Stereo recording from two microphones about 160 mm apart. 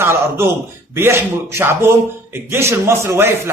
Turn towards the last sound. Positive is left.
turn(degrees=-15)  # may be behind; listen again after turning